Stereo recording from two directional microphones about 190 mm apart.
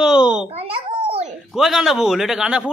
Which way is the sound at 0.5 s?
30° right (ahead or behind).